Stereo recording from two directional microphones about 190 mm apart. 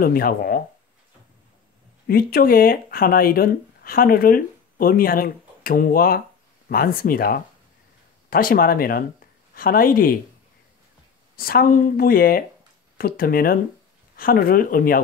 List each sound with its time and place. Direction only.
0.0 s speech: 50° left (ahead or behind)
2.0 s speech: 50° left (ahead or behind)
11.3 s speech: 50° left (ahead or behind)